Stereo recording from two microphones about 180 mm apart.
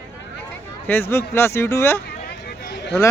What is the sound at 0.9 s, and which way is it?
Speech, 10° left (ahead or behind).